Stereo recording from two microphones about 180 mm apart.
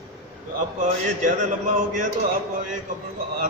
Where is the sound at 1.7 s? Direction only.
45° right (ahead or behind).